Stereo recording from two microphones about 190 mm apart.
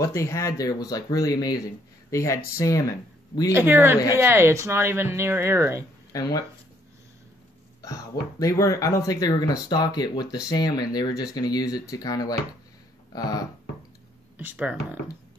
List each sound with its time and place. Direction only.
0.0 s speech: 15° left (ahead or behind)
3.5 s speech: 10° right (ahead or behind)
6.1 s speech: 20° left (ahead or behind)
7.8 s speech: 20° left (ahead or behind)
14.4 s speech: 10° right (ahead or behind)